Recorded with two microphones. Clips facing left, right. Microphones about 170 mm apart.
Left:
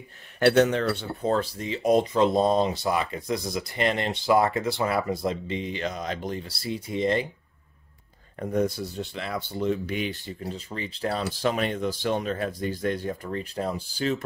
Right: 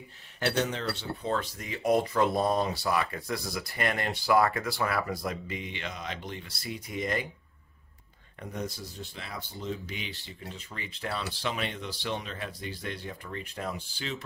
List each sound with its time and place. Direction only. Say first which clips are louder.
0.4 s speech: left 10 dB; 65° left (ahead or behind)
1.2 s speech: left 7 dB; 35° left (ahead or behind)
8.4 s speech: left 11 dB; 55° left (ahead or behind)
10.5 s speech: left 8 dB; 35° left (ahead or behind)